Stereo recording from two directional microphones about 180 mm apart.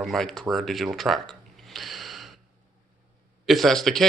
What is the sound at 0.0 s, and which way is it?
Speech, centre (ahead or behind).